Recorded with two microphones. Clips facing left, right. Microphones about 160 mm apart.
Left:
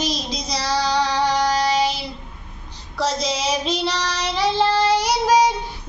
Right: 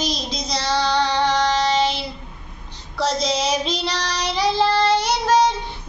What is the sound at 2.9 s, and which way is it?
Child singing, 5° left (ahead or behind).